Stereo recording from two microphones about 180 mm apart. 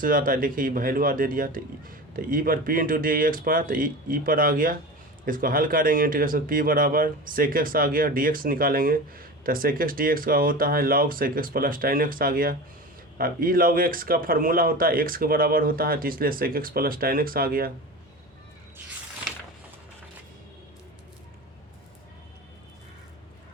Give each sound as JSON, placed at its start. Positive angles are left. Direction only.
{"t": 0.0, "sound": "speech", "side_deg": -50}